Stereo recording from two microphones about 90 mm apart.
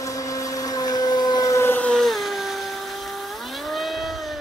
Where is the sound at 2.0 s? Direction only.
Centre (ahead or behind).